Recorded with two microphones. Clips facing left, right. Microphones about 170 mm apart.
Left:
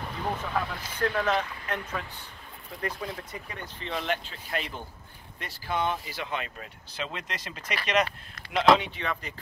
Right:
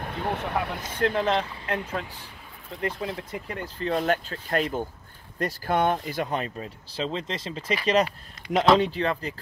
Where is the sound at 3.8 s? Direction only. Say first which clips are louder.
Right 7 dB; 45° right (ahead or behind); by 7.6 s 25° right (ahead or behind).